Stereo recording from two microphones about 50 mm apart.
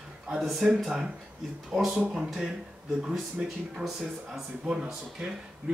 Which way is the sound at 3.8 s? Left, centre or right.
Centre.